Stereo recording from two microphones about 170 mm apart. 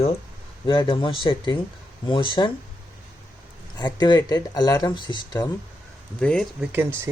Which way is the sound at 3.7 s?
25° left (ahead or behind).